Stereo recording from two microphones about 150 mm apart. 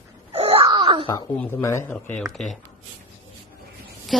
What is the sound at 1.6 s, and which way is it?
Speech, 20° left (ahead or behind).